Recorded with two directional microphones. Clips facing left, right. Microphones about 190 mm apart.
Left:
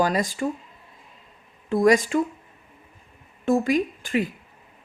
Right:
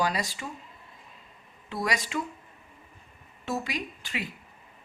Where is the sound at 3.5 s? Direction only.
50° left (ahead or behind).